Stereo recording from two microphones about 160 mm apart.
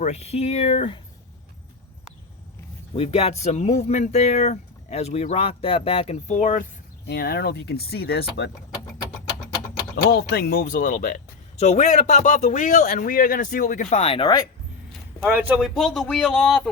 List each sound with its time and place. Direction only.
0.0 s speech: 45° left (ahead or behind)
2.9 s speech: 40° left (ahead or behind)
7.1 s speech: 80° left
9.9 s speech: 75° left (ahead or behind); by 14.4 s 30° left (ahead or behind)
15.2 s speech: 15° right (ahead or behind); by 16.6 s 5° left (ahead or behind)